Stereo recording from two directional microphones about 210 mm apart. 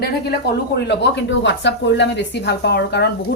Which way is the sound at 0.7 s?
55° left (ahead or behind).